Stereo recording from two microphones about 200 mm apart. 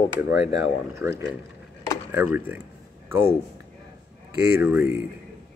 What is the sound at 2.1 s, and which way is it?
Speech, 10° right (ahead or behind).